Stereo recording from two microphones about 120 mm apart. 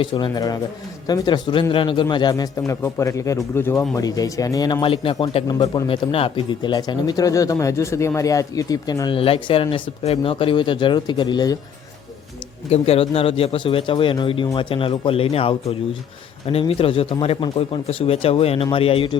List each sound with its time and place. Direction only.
0.0 s speech: 40° left (ahead or behind)
5.3 s speech: 55° left (ahead or behind); by 11.5 s 35° left (ahead or behind)
12.7 s speech: 55° left (ahead or behind)